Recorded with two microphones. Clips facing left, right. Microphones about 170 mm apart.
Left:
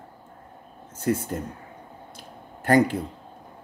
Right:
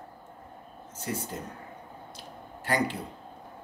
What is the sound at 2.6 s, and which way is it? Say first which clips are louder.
Speech: left 9 dB; 50° left (ahead or behind).